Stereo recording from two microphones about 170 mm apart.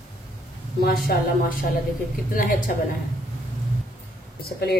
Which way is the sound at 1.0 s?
55° left (ahead or behind).